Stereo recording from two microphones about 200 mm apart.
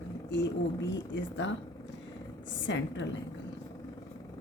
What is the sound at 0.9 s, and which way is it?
Speech, 65° left (ahead or behind).